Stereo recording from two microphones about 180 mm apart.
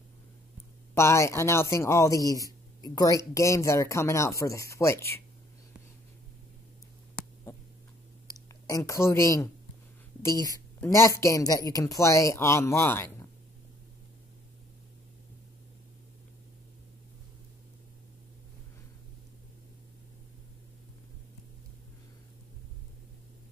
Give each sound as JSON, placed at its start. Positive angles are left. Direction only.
{"t": 0.9, "sound": "a woman's voice", "side_deg": 15}
{"t": 8.3, "sound": "a woman's voice", "side_deg": 20}